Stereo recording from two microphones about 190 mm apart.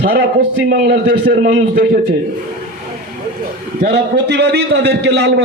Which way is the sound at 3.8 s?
60° right (ahead or behind).